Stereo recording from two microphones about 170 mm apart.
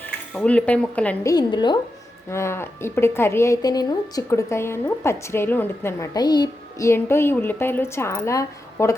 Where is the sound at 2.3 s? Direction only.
15° left (ahead or behind).